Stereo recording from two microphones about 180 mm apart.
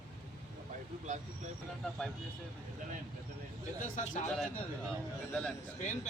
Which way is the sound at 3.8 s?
45° left (ahead or behind).